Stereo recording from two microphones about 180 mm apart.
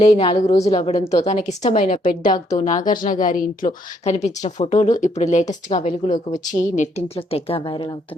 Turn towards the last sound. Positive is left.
turn(degrees=25)  # may be behind; listen again after turning